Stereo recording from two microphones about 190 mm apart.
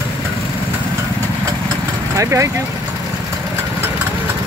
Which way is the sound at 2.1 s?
15° right (ahead or behind).